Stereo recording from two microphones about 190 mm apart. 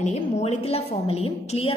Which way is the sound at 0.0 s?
35° left (ahead or behind).